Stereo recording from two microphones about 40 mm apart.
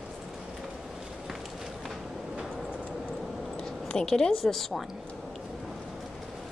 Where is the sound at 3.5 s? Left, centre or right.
Centre.